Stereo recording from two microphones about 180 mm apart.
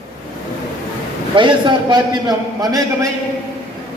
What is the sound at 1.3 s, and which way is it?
A man's voice, 25° right (ahead or behind).